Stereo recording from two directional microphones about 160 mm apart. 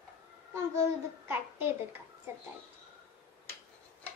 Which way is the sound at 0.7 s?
15° right (ahead or behind).